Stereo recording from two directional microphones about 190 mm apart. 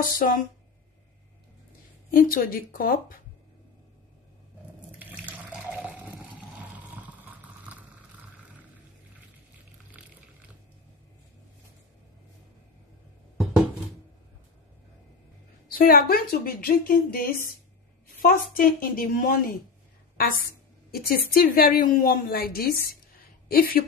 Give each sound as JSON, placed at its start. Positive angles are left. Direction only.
{"t": 0.0, "sound": "a woman's voice", "side_deg": 45}
{"t": 2.0, "sound": "a woman's voice", "side_deg": 50}
{"t": 4.9, "sound": "water", "side_deg": -5}
{"t": 10.0, "sound": "a sound", "side_deg": -5}
{"t": 15.8, "sound": "a woman's voice", "side_deg": 50}